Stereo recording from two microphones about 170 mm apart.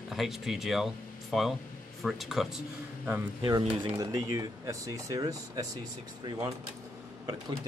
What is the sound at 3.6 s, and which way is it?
Speech, 30° right (ahead or behind).